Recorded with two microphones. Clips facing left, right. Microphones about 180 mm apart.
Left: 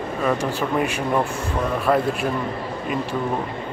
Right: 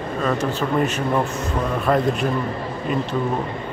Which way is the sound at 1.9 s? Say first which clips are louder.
Even; 5° left (ahead or behind).